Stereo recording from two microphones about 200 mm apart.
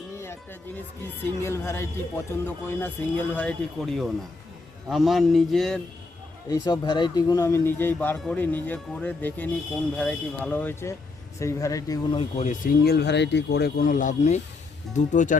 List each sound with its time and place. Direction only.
1.0 s speech: 10° left (ahead or behind)
6.5 s speech: 20° left (ahead or behind)
12.4 s speech: 40° left (ahead or behind)
12.8 s speech: 55° left (ahead or behind); by 15.4 s 40° left (ahead or behind)